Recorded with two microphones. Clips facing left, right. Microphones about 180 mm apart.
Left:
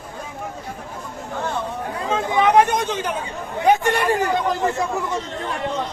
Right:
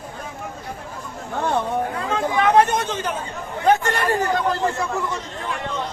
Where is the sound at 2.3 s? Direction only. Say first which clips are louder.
Left 1 dB; 15° left (ahead or behind).